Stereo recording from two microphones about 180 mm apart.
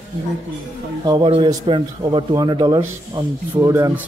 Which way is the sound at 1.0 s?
25° right (ahead or behind).